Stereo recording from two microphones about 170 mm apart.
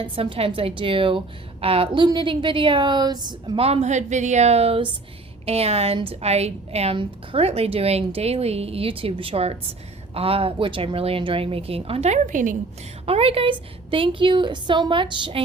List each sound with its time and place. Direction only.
0.0 s a woman's voice: 30° right (ahead or behind); by 12.5 s 50° right (ahead or behind)
13.1 s a woman's voice: 35° right (ahead or behind)